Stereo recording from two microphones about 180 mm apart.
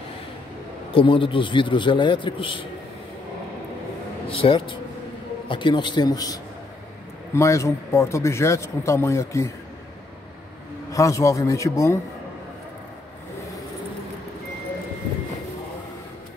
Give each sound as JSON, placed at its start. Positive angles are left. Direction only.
{"t": 0.9, "sound": "a man's voice", "side_deg": 30}
{"t": 4.3, "sound": "a man's voice", "side_deg": 30}
{"t": 10.9, "sound": "speech", "side_deg": 15}